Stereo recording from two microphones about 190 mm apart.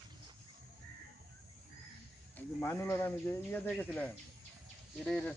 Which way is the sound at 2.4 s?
15° left (ahead or behind).